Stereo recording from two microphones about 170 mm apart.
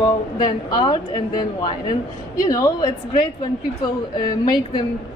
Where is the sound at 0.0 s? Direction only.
25° left (ahead or behind).